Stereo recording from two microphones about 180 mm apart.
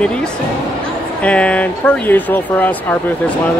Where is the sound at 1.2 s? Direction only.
5° left (ahead or behind).